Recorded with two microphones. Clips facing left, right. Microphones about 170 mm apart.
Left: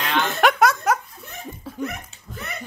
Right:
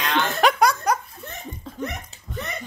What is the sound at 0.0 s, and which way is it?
Chuckle, 5° left (ahead or behind).